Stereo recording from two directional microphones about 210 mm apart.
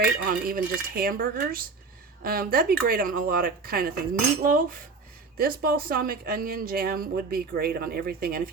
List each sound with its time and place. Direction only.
0.0 s speech: 45° right (ahead or behind)
4.4 s cutlery: 40° right (ahead or behind)
5.4 s speech: 45° right (ahead or behind)